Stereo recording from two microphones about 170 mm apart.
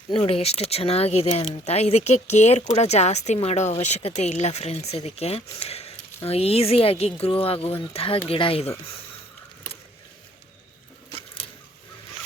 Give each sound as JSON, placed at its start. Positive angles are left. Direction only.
{"t": 0.1, "sound": "speech", "side_deg": 35}